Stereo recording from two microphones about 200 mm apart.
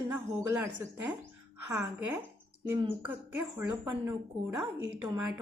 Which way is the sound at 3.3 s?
10° right (ahead or behind).